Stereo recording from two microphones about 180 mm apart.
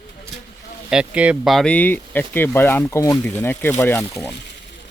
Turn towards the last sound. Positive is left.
turn(degrees=15)  # may be behind; listen again after turning